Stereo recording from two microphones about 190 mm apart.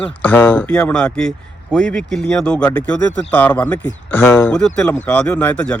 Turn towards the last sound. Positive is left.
turn(degrees=10)  # may be behind; listen again after turning